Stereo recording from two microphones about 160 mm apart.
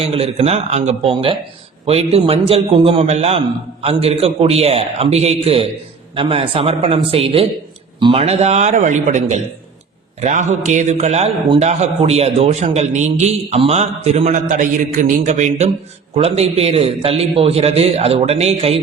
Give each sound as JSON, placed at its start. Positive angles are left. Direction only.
{"t": 0.0, "sound": "a man's voice", "side_deg": -40}